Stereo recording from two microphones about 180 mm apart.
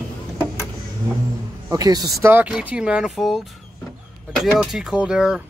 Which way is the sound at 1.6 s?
20° right (ahead or behind).